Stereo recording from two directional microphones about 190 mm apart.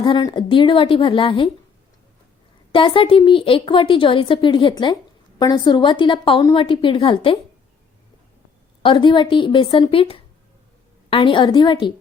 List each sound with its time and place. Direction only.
0.0 s a woman's voice: 25° left (ahead or behind)
2.7 s a woman's voice: 25° left (ahead or behind)
8.8 s a woman's voice: 25° left (ahead or behind)